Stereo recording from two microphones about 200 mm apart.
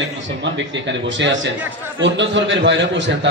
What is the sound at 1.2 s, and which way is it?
A man's voice, 65° right (ahead or behind).